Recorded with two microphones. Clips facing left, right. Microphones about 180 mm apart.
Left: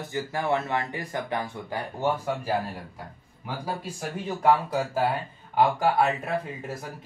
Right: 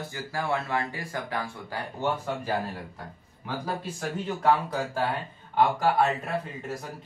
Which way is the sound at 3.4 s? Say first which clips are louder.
Even; 10° left (ahead or behind).